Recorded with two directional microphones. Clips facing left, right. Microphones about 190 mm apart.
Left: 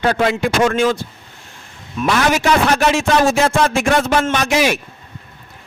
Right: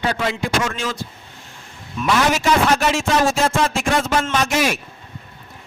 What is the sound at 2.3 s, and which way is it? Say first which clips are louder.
Speech: left 2 dB; 60° left (ahead or behind).